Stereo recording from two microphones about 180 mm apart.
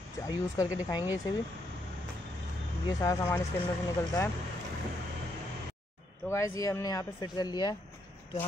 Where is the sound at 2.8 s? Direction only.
20° left (ahead or behind).